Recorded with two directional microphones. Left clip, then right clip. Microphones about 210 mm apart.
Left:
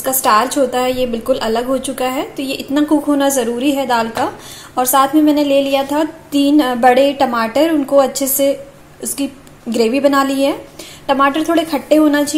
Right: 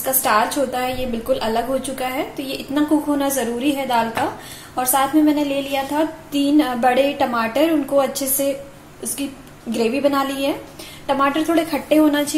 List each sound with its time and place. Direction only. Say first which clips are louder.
0.2 s a woman's voice: left 5 dB; 30° left (ahead or behind)